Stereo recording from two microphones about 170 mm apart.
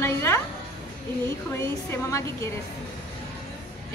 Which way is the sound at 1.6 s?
15° left (ahead or behind).